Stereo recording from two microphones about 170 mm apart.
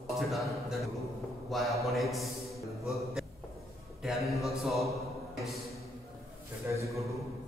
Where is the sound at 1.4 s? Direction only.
Centre (ahead or behind).